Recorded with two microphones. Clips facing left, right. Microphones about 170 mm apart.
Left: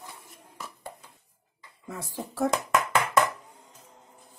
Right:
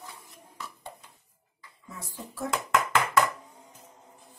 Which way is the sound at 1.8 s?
90° left.